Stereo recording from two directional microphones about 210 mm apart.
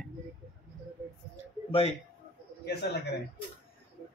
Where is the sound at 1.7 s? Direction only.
25° left (ahead or behind).